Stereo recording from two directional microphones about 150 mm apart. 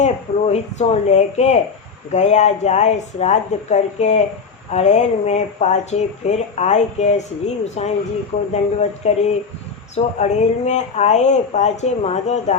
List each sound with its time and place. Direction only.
0.0 s speech: 45° left (ahead or behind)